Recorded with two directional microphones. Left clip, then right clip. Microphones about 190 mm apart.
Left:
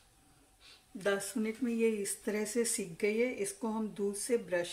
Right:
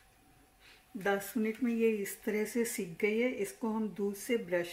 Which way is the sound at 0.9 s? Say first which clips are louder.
Right 1 dB; 25° right (ahead or behind).